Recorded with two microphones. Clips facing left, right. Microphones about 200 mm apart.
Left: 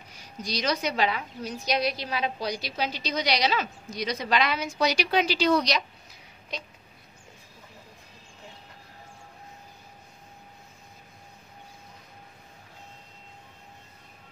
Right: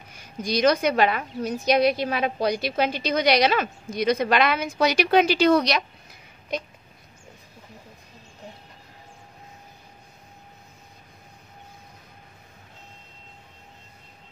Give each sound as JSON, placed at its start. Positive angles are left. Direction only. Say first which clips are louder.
{"t": 0.1, "sound": "a woman's voice", "louder": "right 7 dB", "side_deg": -55}